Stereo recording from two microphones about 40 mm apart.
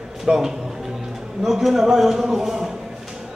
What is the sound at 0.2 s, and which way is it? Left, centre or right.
A man's voice, centre.